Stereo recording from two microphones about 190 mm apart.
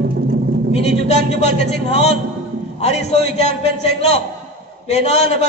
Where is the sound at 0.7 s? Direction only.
35° left (ahead or behind).